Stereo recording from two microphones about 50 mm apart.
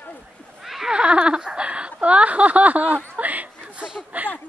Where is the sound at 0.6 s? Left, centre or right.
Centre.